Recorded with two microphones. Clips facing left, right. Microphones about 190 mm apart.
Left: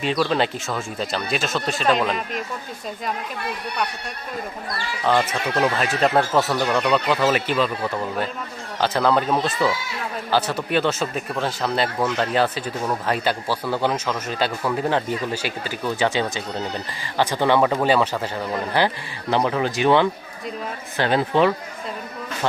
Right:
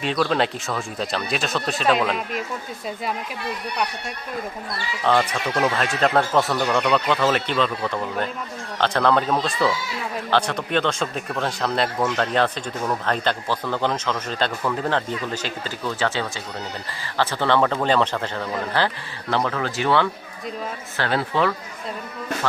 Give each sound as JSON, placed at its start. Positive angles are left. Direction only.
{"t": 0.0, "sound": "speech", "side_deg": 0}
{"t": 5.0, "sound": "speech", "side_deg": 0}
{"t": 8.8, "sound": "speech", "side_deg": 5}